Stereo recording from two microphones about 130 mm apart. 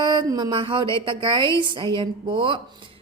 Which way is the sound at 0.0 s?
35° right (ahead or behind).